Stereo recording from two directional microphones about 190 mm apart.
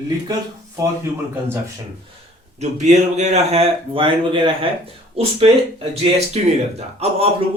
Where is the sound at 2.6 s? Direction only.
35° right (ahead or behind).